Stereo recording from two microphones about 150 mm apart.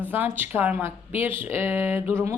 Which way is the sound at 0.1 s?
15° right (ahead or behind).